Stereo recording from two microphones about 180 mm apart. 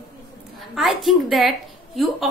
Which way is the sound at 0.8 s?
Centre (ahead or behind).